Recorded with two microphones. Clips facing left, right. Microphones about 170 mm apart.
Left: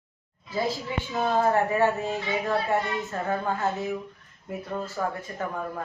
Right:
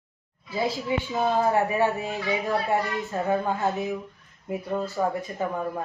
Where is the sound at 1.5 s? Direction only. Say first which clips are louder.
Even; 15° right (ahead or behind).